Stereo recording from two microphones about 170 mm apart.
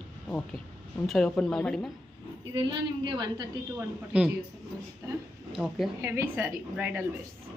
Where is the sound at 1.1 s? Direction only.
Centre (ahead or behind).